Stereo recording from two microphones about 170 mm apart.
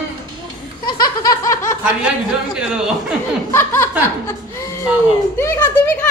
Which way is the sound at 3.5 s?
15° left (ahead or behind).